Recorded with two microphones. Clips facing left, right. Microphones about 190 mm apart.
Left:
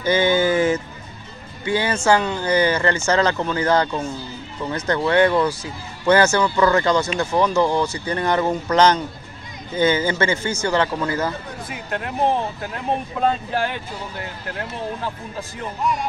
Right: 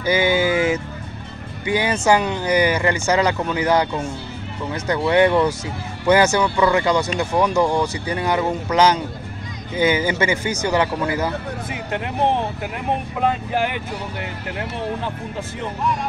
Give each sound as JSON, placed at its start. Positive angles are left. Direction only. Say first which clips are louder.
{"t": 0.0, "sound": "a man's voice", "louder": "even", "side_deg": -10}